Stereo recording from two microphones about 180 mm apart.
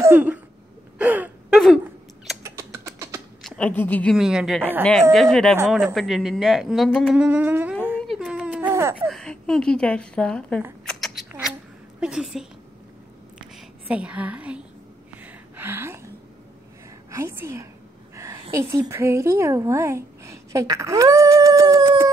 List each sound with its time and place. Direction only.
0.0 s a sound: 10° right (ahead or behind)
0.9 s gasp: 10° right (ahead or behind)
2.4 s rodents: 15° right (ahead or behind)
3.4 s speech: 5° left (ahead or behind)
4.2 s speech: 5° right (ahead or behind)
8.1 s a sound: centre (ahead or behind)
9.1 s speech: 5° left (ahead or behind)
10.9 s shuffling cards: centre (ahead or behind)
12.0 s speech: 5° right (ahead or behind)
13.8 s a woman's voice: 5° right (ahead or behind)
15.2 s a sound: 10° right (ahead or behind)
17.1 s a woman's voice: 10° right (ahead or behind)
18.1 s a sound: 15° right (ahead or behind)
18.5 s a woman's voice: 15° right (ahead or behind)